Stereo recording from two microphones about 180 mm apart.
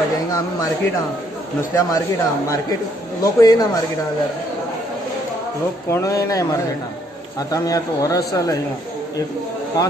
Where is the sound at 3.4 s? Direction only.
20° left (ahead or behind).